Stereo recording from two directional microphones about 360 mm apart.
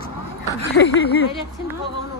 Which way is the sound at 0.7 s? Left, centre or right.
Left.